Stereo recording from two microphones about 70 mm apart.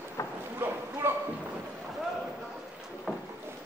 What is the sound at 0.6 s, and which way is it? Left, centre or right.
Clip-clop, right.